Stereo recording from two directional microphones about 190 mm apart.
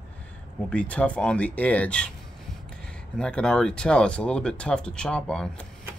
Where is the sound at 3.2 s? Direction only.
5° left (ahead or behind).